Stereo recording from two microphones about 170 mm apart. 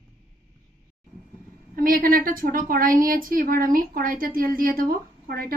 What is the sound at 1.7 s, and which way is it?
A woman's voice, 55° right (ahead or behind).